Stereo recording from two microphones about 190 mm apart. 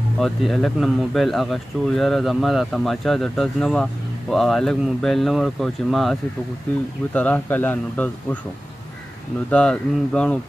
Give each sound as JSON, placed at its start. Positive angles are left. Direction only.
{"t": 0.2, "sound": "speech", "side_deg": 0}
{"t": 7.2, "sound": "speech", "side_deg": 10}
{"t": 9.5, "sound": "speech", "side_deg": 5}